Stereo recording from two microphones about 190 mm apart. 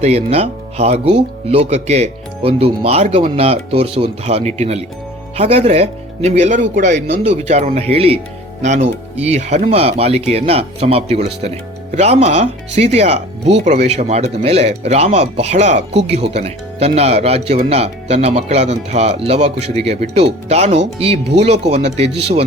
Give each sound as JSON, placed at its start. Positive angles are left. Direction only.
{"t": 0.0, "sound": "speech", "side_deg": -35}